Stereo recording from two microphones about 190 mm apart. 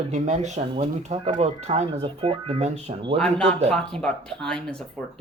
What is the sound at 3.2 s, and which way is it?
Speech, 5° left (ahead or behind).